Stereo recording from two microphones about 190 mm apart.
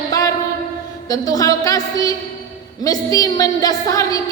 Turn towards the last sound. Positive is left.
turn(degrees=20)  # may be behind; listen again after turning